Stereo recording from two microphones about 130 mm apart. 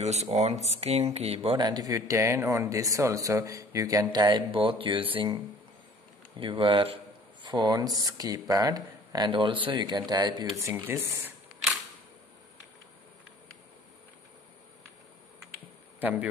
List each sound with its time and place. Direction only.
0.0 s speech: 55° right (ahead or behind)
1.6 s a man's voice: 30° right (ahead or behind)
6.4 s speech: 40° right (ahead or behind); by 11.3 s 20° right (ahead or behind)
16.0 s speech: 10° right (ahead or behind)